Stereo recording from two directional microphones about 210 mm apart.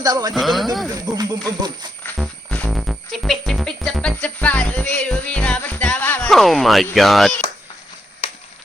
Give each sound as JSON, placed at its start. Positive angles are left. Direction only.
{"t": 0.0, "sound": "speech", "side_deg": -15}
{"t": 0.3, "sound": "speech", "side_deg": 0}
{"t": 0.9, "sound": "speech", "side_deg": -15}
{"t": 2.0, "sound": "music", "side_deg": 5}
{"t": 6.8, "sound": "speech", "side_deg": 0}